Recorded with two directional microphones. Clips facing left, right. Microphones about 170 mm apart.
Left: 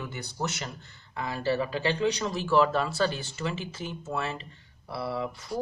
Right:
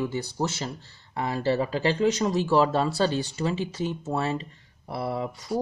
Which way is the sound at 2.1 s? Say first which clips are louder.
Right 4 dB; 40° right (ahead or behind).